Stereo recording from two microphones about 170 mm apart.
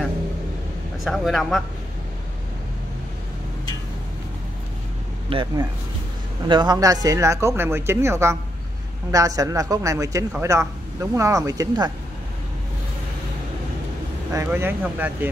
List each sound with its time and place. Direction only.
1.0 s speech: centre (ahead or behind)
5.3 s speech: 35° right (ahead or behind)
14.3 s speech: 15° right (ahead or behind)